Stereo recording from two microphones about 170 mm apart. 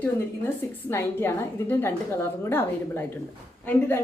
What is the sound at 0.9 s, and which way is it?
A woman's voice, 15° left (ahead or behind).